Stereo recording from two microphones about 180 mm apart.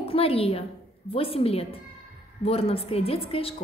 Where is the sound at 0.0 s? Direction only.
30° left (ahead or behind).